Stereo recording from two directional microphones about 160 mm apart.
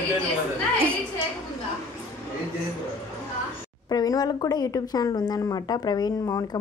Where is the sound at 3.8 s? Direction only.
25° left (ahead or behind).